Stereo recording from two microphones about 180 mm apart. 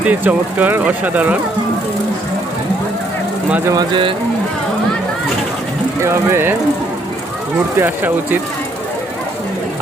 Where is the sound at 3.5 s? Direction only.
15° right (ahead or behind).